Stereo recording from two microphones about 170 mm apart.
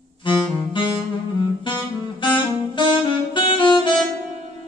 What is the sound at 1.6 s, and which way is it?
Saxophone, 30° left (ahead or behind).